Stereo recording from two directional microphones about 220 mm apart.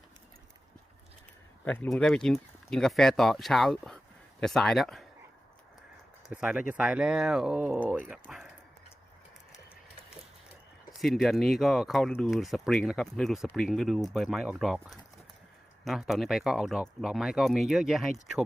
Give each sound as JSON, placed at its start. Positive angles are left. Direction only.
{"t": 1.6, "sound": "speech", "side_deg": 5}
{"t": 6.3, "sound": "speech", "side_deg": -5}
{"t": 11.0, "sound": "speech", "side_deg": 0}